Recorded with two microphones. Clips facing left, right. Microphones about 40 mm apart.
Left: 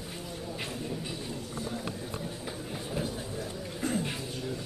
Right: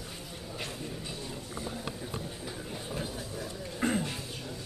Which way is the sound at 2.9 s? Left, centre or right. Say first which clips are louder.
Left 4 dB; centre.